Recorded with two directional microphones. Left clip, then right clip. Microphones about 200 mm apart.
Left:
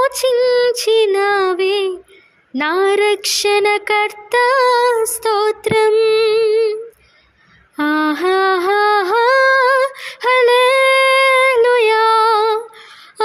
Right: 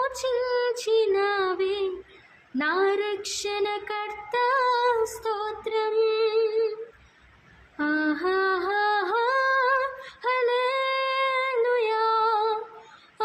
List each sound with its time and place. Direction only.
0.0 s child singing: 45° left (ahead or behind)
2.6 s a sound: 45° left (ahead or behind)
7.8 s female singing: 50° left (ahead or behind)